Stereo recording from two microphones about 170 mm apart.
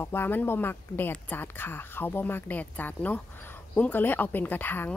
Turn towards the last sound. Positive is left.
turn(degrees=10)  # may be behind; listen again after turning